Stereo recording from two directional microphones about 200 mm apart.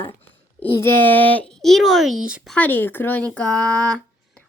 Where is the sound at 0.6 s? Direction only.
10° left (ahead or behind).